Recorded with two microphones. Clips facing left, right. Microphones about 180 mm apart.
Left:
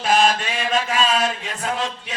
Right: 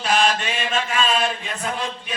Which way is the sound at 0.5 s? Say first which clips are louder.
Left 2 dB; 40° left (ahead or behind).